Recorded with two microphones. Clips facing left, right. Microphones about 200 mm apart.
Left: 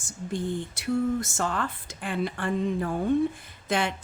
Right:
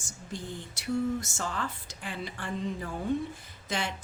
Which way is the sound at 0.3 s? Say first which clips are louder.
Left 9 dB; 55° left (ahead or behind).